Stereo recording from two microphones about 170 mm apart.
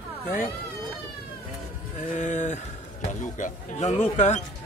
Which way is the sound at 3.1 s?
50° left (ahead or behind).